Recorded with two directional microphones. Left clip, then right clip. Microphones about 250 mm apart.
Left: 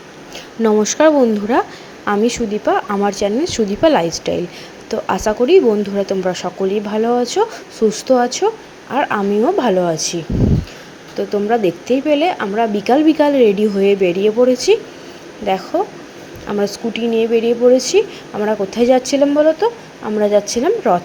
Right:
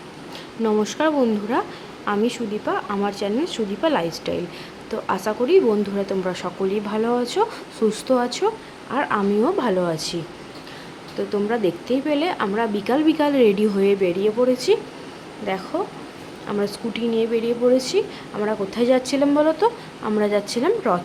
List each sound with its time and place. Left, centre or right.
0.6 s speech: centre
11.3 s speech: centre